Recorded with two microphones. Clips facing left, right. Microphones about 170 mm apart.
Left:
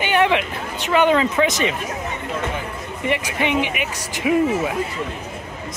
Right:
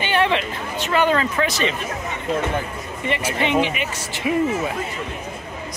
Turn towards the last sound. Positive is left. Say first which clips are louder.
# left 3 dB
turn(degrees=15)  # may be behind; listen again after turning